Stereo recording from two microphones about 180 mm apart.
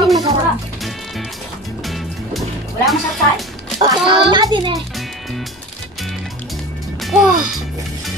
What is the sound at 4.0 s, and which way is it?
Speech, 25° right (ahead or behind).